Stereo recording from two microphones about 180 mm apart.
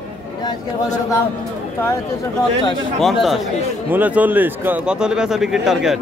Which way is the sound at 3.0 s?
Centre (ahead or behind).